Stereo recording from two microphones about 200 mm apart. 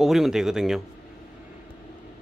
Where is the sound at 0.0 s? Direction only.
Centre (ahead or behind).